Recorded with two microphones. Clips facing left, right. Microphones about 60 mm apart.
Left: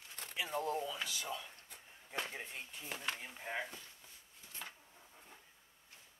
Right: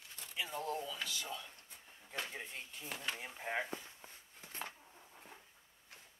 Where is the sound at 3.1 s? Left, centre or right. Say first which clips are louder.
Right 2 dB; centre.